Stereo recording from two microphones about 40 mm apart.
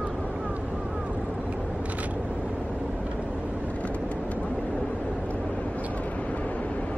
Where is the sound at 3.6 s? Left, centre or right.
Left.